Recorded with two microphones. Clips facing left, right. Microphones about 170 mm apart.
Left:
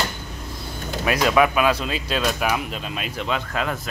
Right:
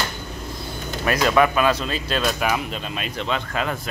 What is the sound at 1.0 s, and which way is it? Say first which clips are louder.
Speech: even; 5° left (ahead or behind).